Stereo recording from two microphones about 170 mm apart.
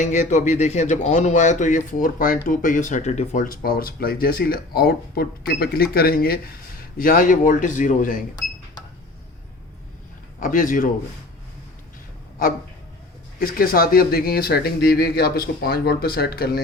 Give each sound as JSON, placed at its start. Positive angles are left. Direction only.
{"t": 0.0, "sound": "a man's voice", "side_deg": 45}
{"t": 10.4, "sound": "speech", "side_deg": 55}
{"t": 13.4, "sound": "speech", "side_deg": 60}